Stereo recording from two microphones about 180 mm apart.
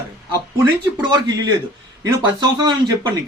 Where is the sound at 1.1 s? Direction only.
25° right (ahead or behind).